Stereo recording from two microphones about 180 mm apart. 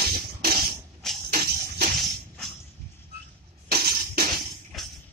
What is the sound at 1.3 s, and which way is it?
Music, 60° right (ahead or behind).